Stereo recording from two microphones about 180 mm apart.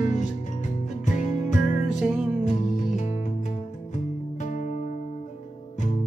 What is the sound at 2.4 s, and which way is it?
Music, 45° left (ahead or behind).